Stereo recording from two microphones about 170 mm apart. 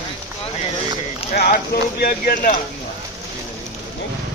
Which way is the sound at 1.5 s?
60° left (ahead or behind).